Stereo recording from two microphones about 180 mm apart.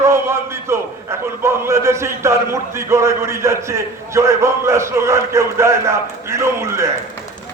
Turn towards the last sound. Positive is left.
turn(degrees=-15)  # may be behind; listen again after turning